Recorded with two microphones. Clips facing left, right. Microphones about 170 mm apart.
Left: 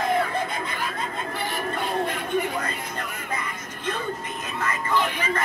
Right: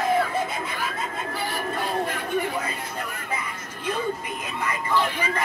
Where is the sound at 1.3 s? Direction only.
20° left (ahead or behind).